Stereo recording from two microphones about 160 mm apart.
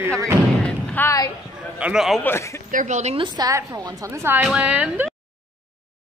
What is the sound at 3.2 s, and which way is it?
A woman's voice, 25° right (ahead or behind).